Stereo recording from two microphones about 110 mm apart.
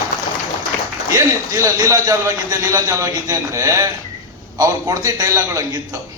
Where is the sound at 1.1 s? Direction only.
30° right (ahead or behind).